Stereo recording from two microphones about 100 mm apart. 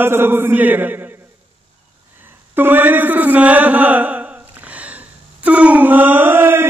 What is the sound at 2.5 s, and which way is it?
Chant, 20° right (ahead or behind).